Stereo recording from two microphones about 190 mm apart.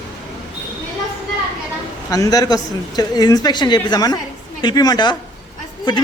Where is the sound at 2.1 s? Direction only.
20° left (ahead or behind).